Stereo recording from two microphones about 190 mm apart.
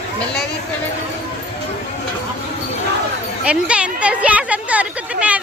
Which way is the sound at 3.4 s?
5° right (ahead or behind).